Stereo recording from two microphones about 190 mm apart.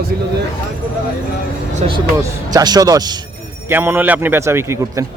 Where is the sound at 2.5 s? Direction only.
20° right (ahead or behind).